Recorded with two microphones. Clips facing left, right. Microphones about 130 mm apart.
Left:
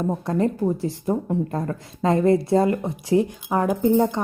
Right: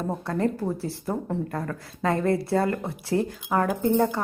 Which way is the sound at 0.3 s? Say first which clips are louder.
Left 4 dB; 20° left (ahead or behind).